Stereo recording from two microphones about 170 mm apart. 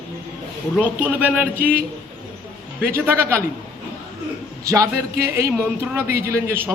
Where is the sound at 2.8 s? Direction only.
15° right (ahead or behind).